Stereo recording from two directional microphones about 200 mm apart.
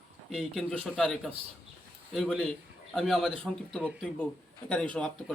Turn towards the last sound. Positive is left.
turn(degrees=5)  # may be behind; listen again after turning